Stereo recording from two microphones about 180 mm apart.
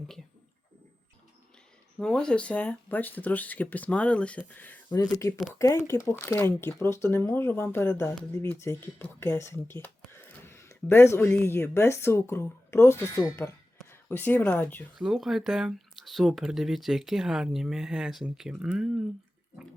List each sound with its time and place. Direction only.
2.0 s speech: 5° left (ahead or behind)
14.9 s speech: centre (ahead or behind)